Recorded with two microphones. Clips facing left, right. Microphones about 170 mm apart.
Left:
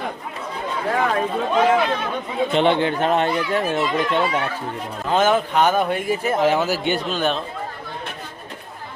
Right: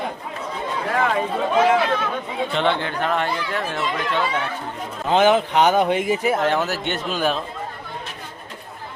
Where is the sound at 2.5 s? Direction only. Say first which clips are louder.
Left 5 dB; 15° left (ahead or behind).